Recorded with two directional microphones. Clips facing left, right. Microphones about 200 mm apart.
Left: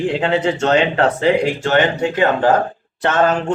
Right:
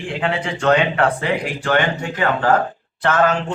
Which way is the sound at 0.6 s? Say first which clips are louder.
Right 2 dB; 25° left (ahead or behind).